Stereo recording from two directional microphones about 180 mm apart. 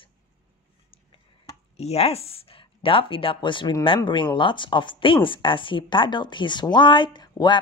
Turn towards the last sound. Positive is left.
turn(degrees=25)  # may be behind; listen again after turning